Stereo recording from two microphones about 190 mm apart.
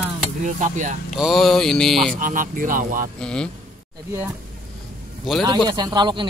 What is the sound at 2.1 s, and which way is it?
Speech, 45° right (ahead or behind).